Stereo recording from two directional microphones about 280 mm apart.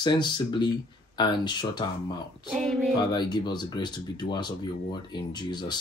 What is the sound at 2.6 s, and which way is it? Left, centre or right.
Child singing, centre.